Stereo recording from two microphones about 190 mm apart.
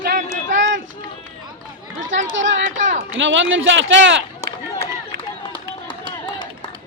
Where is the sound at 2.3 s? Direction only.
85° right.